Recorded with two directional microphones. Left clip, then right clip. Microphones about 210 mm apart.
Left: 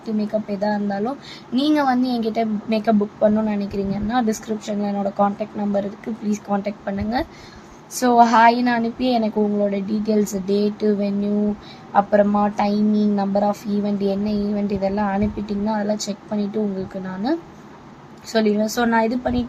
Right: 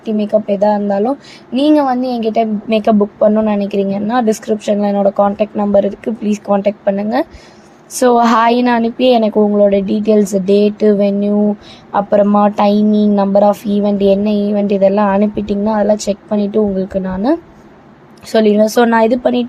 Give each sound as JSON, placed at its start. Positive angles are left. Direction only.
{"t": 0.2, "sound": "speech", "side_deg": -30}